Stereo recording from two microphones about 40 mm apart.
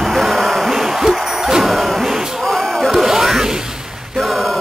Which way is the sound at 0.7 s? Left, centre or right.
Centre.